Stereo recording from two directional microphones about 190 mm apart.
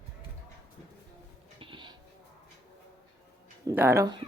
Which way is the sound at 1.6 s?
25° right (ahead or behind).